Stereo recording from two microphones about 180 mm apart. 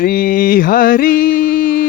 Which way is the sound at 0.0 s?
50° left (ahead or behind).